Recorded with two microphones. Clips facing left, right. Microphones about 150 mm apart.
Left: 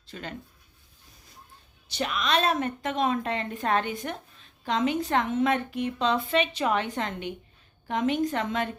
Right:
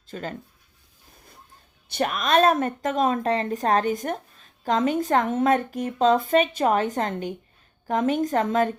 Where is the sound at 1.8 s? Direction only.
50° right (ahead or behind).